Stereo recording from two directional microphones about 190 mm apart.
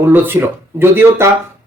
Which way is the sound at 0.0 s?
10° right (ahead or behind).